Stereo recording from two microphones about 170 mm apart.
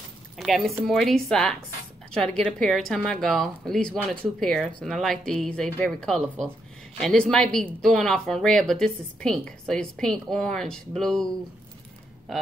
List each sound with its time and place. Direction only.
0.4 s a woman's voice: centre (ahead or behind)
12.3 s a woman's voice: centre (ahead or behind)